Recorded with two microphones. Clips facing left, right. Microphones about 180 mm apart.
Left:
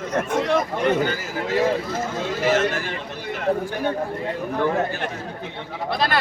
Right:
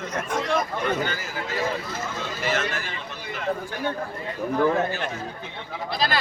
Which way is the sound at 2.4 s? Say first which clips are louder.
Left 7 dB; 45° left (ahead or behind).